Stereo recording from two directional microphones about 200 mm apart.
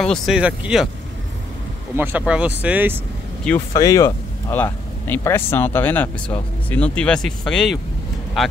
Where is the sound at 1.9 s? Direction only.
10° right (ahead or behind).